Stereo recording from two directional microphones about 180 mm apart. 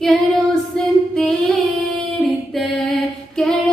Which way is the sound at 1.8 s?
Centre (ahead or behind).